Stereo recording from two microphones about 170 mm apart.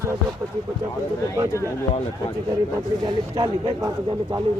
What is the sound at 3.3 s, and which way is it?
Speech, 25° right (ahead or behind).